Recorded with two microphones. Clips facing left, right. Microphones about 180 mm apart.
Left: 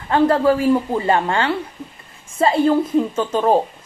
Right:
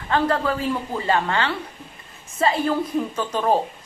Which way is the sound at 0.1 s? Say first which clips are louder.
Left 6 dB; 25° left (ahead or behind).